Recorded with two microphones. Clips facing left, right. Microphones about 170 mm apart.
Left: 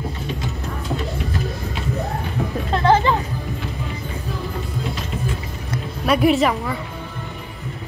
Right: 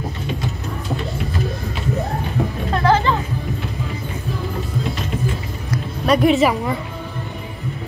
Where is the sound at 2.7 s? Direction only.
25° left (ahead or behind).